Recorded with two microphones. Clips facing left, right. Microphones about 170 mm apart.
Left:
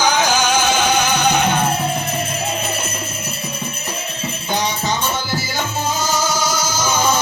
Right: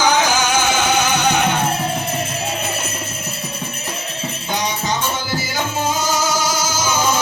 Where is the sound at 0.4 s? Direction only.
20° left (ahead or behind).